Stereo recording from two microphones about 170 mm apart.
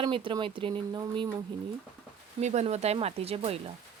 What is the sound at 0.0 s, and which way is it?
Speech, 30° right (ahead or behind).